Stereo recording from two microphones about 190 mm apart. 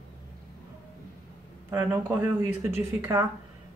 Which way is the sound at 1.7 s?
10° right (ahead or behind).